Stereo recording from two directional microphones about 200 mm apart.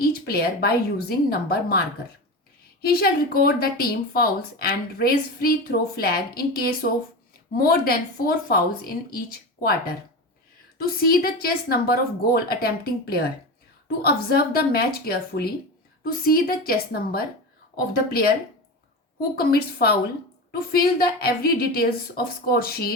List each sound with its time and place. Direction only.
0.0 s speech: 50° left (ahead or behind)
2.8 s speech: 50° left (ahead or behind)
19.4 s speech: 50° left (ahead or behind)
21.0 s speech: 50° left (ahead or behind)